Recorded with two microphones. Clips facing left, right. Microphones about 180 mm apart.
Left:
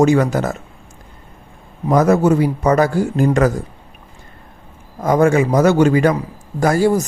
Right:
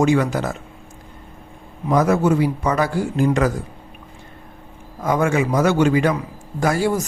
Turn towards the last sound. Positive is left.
turn(degrees=40)  # may be behind; listen again after turning